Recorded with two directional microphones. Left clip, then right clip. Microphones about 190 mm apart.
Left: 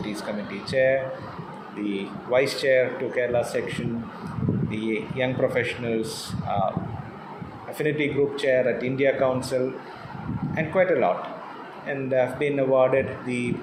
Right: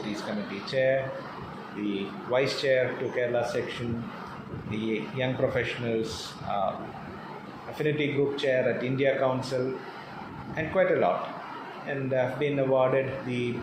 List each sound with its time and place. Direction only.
0.7 s speech: 40° left (ahead or behind)
7.8 s speech: 40° left (ahead or behind)